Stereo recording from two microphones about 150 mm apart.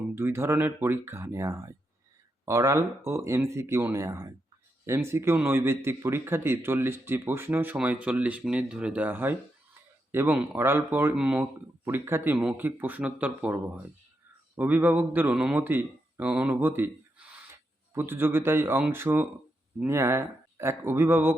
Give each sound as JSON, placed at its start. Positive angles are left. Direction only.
{"t": 0.2, "sound": "a man's voice", "side_deg": -15}